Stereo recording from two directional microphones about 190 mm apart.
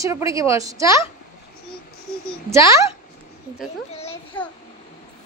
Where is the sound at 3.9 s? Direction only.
30° left (ahead or behind).